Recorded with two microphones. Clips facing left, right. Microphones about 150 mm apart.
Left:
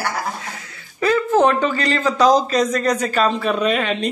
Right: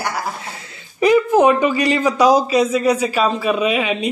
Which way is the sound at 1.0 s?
15° right (ahead or behind).